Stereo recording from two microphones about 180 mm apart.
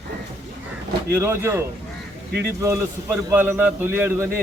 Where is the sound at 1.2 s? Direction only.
15° right (ahead or behind).